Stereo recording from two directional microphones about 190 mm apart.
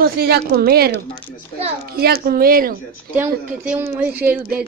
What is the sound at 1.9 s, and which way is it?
Speech, 55° right (ahead or behind).